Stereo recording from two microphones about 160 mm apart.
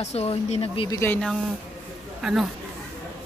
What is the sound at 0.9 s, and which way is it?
Speech, 15° left (ahead or behind).